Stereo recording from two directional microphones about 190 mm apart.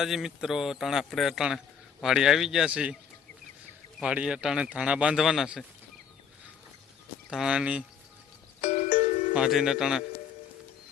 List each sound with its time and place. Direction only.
0.0 s a man's voice: centre (ahead or behind)
4.0 s a man's voice: 5° right (ahead or behind)
7.3 s a man's voice: 5° right (ahead or behind)
8.6 s music: 40° left (ahead or behind)
9.3 s a man's voice: 5° right (ahead or behind)